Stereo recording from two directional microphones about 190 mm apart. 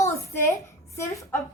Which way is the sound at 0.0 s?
15° left (ahead or behind).